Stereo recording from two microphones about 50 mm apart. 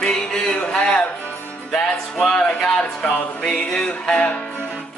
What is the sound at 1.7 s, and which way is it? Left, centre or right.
Music, centre.